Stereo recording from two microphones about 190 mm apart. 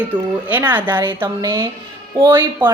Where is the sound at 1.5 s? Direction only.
25° right (ahead or behind).